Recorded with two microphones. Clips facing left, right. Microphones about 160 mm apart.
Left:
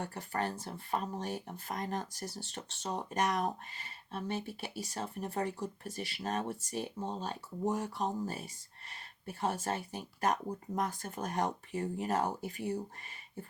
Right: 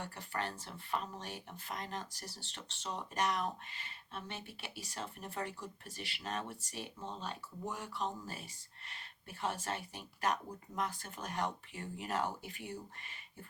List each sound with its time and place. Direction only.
0.0 s speech: 45° left (ahead or behind)